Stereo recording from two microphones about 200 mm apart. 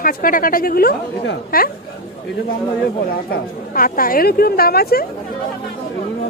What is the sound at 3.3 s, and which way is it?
A woman's voice, 45° left (ahead or behind).